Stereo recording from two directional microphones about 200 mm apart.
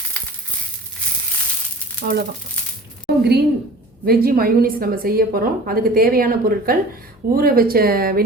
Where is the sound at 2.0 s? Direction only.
50° right (ahead or behind).